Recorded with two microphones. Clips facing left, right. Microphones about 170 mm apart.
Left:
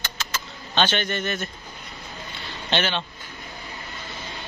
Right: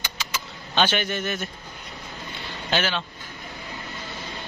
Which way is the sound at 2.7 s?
Centre (ahead or behind).